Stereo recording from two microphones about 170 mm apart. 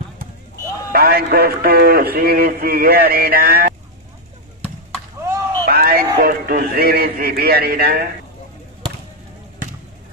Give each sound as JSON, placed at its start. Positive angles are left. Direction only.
{"t": 0.9, "sound": "a man's voice", "side_deg": -65}
{"t": 5.7, "sound": "a man's voice", "side_deg": -65}